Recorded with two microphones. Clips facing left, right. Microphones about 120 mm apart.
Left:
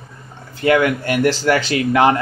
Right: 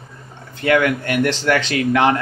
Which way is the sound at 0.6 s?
25° left (ahead or behind).